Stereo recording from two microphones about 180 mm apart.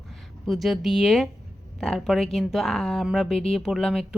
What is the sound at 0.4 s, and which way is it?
A woman's voice, centre (ahead or behind).